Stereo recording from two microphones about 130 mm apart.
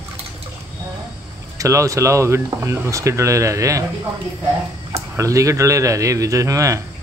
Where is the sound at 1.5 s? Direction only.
25° right (ahead or behind).